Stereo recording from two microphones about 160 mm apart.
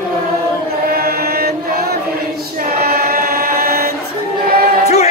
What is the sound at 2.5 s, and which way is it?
Choir, 70° right (ahead or behind).